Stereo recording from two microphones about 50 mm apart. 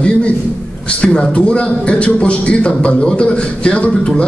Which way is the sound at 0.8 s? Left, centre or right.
Left.